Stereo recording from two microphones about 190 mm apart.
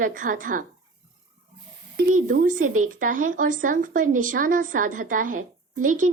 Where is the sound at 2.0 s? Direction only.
45° right (ahead or behind).